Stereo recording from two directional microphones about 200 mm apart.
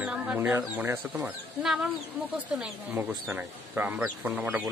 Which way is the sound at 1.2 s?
5° right (ahead or behind).